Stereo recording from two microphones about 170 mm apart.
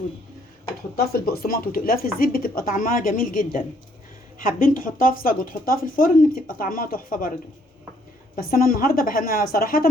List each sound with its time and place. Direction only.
0.9 s speech: 65° left (ahead or behind)
8.4 s speech: 60° left (ahead or behind)